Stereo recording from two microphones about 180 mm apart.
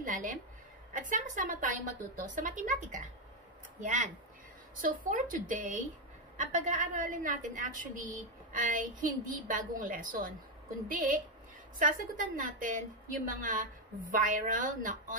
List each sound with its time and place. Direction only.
0.0 s a sound: 45° right (ahead or behind)
1.0 s a woman's voice: 45° right (ahead or behind)
11.8 s a woman's voice: 50° right (ahead or behind)